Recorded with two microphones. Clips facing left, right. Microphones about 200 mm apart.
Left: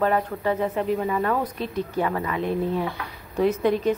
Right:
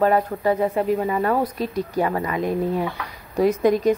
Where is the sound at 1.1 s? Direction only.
35° right (ahead or behind).